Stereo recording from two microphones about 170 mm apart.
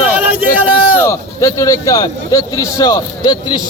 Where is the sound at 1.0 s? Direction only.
20° left (ahead or behind).